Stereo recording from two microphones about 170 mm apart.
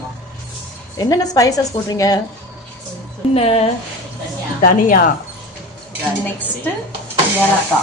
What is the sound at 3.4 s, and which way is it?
Speech, 35° left (ahead or behind).